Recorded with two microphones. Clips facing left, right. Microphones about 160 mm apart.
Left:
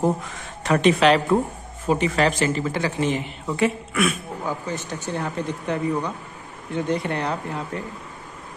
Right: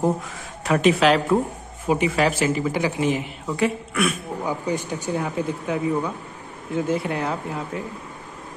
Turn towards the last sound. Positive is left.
turn(degrees=-5)  # may be behind; listen again after turning